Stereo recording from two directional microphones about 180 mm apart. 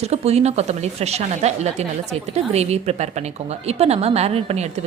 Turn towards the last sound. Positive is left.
turn(degrees=-35)  # may be behind; listen again after turning